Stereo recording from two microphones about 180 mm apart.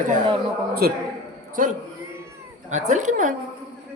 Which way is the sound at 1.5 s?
50° right (ahead or behind).